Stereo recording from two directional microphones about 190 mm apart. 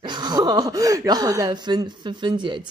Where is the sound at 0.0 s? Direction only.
25° right (ahead or behind).